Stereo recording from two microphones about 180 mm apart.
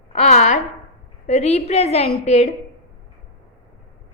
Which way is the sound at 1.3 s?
35° left (ahead or behind).